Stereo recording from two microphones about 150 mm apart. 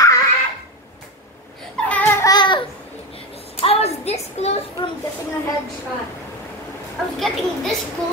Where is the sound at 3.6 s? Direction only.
40° left (ahead or behind).